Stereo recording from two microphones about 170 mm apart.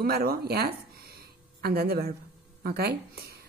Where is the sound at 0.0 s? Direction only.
65° right (ahead or behind).